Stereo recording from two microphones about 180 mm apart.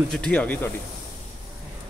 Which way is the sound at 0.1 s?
5° left (ahead or behind).